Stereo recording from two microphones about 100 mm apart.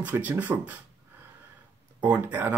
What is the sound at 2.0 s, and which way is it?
Speech, 15° right (ahead or behind).